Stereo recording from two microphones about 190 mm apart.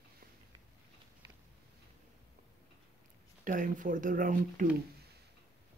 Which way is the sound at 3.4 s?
45° right (ahead or behind).